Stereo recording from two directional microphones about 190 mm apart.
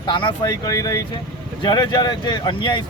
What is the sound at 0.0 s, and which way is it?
Speech, 25° left (ahead or behind).